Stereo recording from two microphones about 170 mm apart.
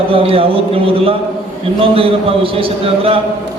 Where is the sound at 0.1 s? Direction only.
35° right (ahead or behind).